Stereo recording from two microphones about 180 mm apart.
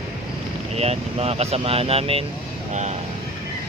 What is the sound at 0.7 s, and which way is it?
Speech, 35° right (ahead or behind).